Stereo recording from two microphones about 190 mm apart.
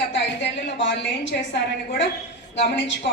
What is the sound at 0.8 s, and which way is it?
Speech, 70° left (ahead or behind).